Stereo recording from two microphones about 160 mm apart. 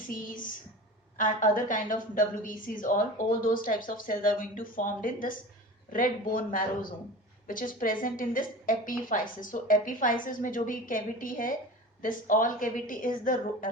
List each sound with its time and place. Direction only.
1.1 s a woman's voice: 55° left (ahead or behind)